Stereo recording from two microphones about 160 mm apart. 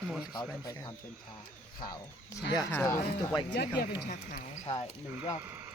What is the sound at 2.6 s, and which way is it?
Speech, 15° left (ahead or behind).